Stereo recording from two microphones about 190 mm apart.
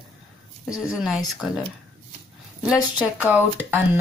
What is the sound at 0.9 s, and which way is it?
Speech, 5° right (ahead or behind).